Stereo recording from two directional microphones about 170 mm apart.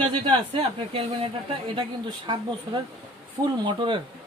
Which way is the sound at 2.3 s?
30° right (ahead or behind).